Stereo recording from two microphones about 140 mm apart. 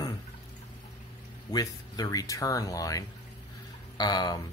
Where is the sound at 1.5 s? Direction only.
25° left (ahead or behind).